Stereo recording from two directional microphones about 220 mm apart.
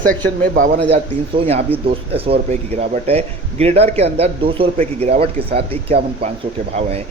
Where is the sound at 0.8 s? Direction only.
25° right (ahead or behind).